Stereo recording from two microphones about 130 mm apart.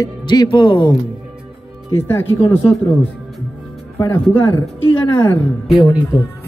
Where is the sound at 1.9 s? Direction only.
20° left (ahead or behind).